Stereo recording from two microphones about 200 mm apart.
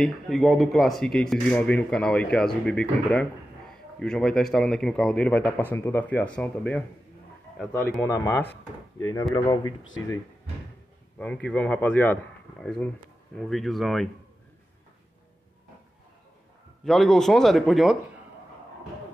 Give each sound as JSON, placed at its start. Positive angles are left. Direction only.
{"t": 0.0, "sound": "speech", "side_deg": 0}
{"t": 7.9, "sound": "a man's voice", "side_deg": 10}
{"t": 11.1, "sound": "a man's voice", "side_deg": 5}
{"t": 16.8, "sound": "speech", "side_deg": 0}